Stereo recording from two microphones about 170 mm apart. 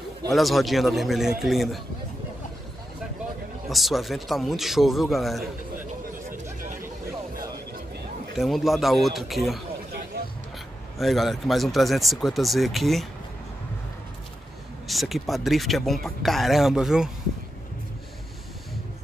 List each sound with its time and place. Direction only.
0.3 s speech: centre (ahead or behind)
3.6 s speech: centre (ahead or behind)
8.4 s speech: centre (ahead or behind)
10.1 s a sound: 70° right (ahead or behind)
11.0 s speech: centre (ahead or behind)
14.9 s speech: centre (ahead or behind)